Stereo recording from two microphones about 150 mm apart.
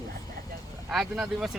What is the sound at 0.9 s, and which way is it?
Speech, 5° right (ahead or behind).